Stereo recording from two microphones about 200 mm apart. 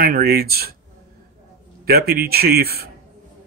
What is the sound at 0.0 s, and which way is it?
Speech, 50° right (ahead or behind).